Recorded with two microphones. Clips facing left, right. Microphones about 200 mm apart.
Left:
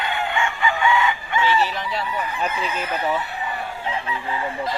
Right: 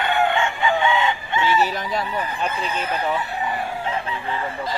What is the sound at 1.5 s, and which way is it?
Fowl, 45° right (ahead or behind).